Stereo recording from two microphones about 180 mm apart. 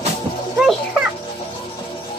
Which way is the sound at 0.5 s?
5° right (ahead or behind).